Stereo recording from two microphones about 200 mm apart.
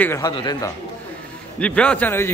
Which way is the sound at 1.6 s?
5° left (ahead or behind).